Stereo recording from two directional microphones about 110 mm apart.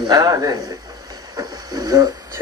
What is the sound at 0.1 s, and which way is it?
Speech, 35° right (ahead or behind).